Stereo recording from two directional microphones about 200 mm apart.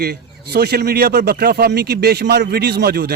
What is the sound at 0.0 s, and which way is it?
A man's voice, 50° right (ahead or behind).